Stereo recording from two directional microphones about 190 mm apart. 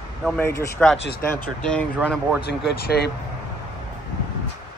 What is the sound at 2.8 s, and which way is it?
Speech, 55° left (ahead or behind).